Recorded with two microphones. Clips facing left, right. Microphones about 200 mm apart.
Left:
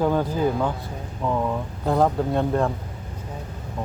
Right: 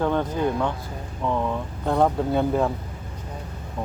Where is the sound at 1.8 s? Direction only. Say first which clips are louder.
Even; centre (ahead or behind).